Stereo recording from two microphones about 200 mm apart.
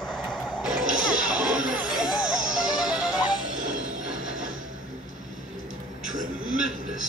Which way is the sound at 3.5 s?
40° right (ahead or behind).